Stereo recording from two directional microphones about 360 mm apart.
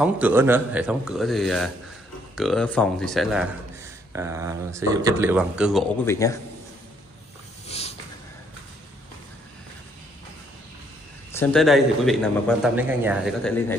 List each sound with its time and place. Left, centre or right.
0.0 s a man's voice: centre
7.6 s a sound: centre
11.3 s a man's voice: centre